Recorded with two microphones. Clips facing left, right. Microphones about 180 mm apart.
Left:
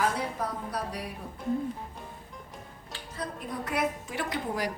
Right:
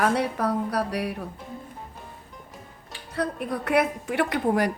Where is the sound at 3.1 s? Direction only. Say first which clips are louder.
Right 9 dB; 65° right (ahead or behind).